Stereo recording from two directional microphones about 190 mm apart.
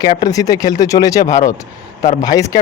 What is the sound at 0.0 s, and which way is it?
Speech, 20° left (ahead or behind).